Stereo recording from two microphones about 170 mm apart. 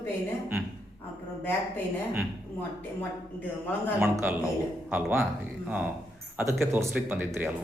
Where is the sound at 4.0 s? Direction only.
10° right (ahead or behind).